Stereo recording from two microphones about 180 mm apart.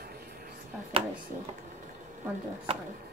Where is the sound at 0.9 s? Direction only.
30° right (ahead or behind).